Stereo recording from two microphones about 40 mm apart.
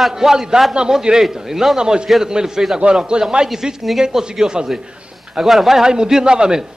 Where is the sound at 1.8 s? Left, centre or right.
Right.